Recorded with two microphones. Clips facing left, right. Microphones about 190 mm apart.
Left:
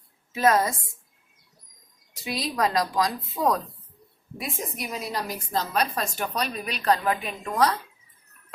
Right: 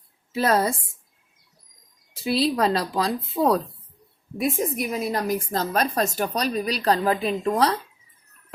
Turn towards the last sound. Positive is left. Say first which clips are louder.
# right 3 dB
turn(degrees=-30)  # may be behind; listen again after turning